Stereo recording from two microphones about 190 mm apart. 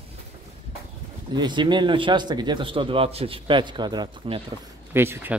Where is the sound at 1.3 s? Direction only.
25° right (ahead or behind).